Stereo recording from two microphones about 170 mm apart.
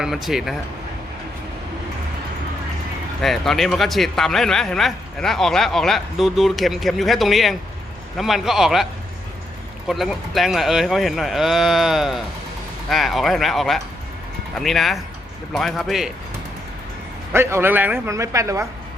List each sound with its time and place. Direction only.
0.0 s speech: centre (ahead or behind)
3.2 s speech: centre (ahead or behind)
17.3 s a man's voice: 15° right (ahead or behind)